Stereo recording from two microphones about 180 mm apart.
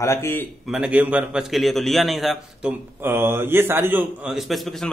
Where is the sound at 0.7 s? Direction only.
5° right (ahead or behind).